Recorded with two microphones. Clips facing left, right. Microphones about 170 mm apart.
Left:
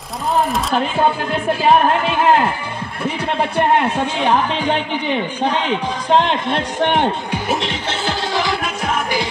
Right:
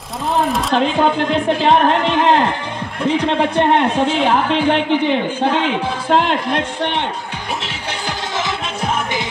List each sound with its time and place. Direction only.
0.5 s a man's voice: centre (ahead or behind)
6.8 s a man's voice: 50° left (ahead or behind)
8.4 s music: 20° right (ahead or behind)